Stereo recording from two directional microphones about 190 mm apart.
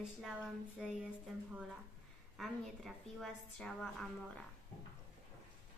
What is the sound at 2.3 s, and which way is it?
A woman's voice, centre (ahead or behind).